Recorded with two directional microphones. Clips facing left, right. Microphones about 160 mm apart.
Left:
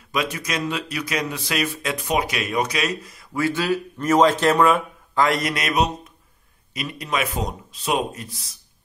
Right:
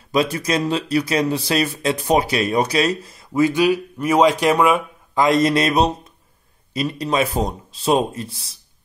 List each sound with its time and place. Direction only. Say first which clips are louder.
0.1 s speech: right 6 dB; 35° right (ahead or behind)